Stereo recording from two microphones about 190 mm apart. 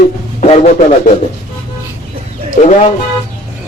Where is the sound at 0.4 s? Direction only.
35° left (ahead or behind).